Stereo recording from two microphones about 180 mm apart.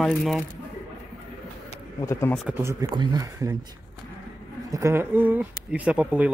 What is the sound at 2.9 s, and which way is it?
Speech, 25° right (ahead or behind).